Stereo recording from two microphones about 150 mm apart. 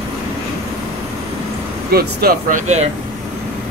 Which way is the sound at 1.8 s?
90° right.